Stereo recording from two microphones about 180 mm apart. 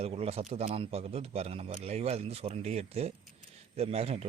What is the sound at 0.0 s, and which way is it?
Speech, 35° right (ahead or behind).